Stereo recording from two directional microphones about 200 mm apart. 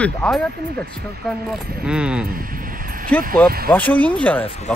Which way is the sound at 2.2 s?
45° right (ahead or behind).